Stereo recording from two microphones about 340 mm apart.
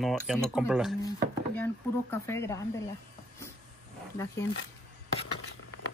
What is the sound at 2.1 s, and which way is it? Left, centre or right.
Speech, centre.